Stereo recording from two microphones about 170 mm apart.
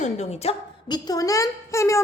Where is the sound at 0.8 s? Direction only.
25° left (ahead or behind).